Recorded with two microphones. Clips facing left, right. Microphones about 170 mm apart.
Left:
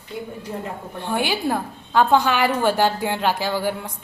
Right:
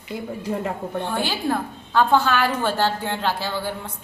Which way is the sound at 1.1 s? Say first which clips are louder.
Left 4 dB; 15° left (ahead or behind).